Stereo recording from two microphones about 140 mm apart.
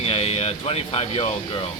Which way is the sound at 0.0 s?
45° left (ahead or behind).